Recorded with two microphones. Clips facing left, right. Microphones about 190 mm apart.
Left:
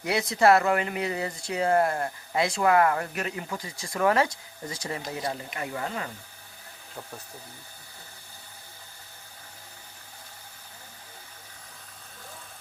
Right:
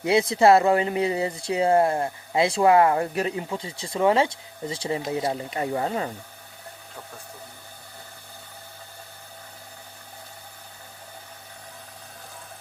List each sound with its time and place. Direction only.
0.0 s speech: 30° right (ahead or behind)